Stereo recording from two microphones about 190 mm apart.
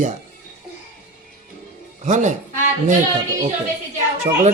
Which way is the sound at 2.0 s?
40° right (ahead or behind).